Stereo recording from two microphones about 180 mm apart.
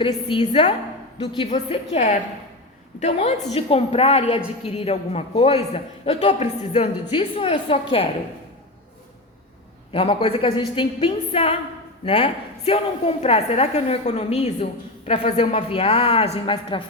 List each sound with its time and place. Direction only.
0.0 s a woman's voice: 30° left (ahead or behind)
9.9 s a woman's voice: 30° left (ahead or behind)